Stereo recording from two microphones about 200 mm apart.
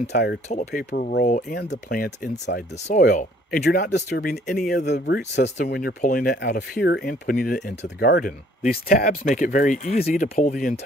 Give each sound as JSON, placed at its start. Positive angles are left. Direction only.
{"t": 0.1, "sound": "speech", "side_deg": 55}
{"t": 0.7, "sound": "speech", "side_deg": 45}
{"t": 2.5, "sound": "speech", "side_deg": 45}
{"t": 4.7, "sound": "speech", "side_deg": 55}